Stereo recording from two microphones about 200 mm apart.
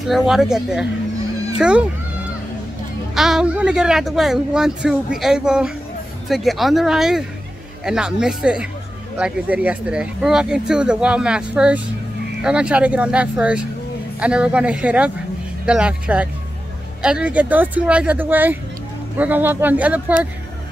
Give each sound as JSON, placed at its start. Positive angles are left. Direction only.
{"t": 0.0, "sound": "speech", "side_deg": 0}
{"t": 3.2, "sound": "speech", "side_deg": -5}